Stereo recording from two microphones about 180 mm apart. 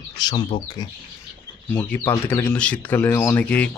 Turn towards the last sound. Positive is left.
turn(degrees=5)  # may be behind; listen again after turning